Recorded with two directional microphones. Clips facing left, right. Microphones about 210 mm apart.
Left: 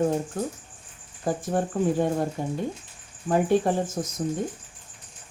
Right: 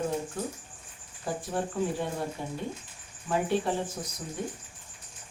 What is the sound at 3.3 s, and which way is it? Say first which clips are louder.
Speech: left 6 dB; 45° left (ahead or behind).